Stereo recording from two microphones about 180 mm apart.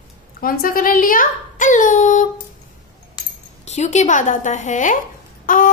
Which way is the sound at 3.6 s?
40° left (ahead or behind).